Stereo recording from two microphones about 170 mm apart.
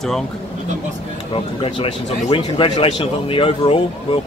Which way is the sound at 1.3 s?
30° left (ahead or behind).